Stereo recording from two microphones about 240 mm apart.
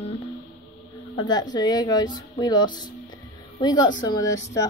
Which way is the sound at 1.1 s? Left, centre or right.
Centre.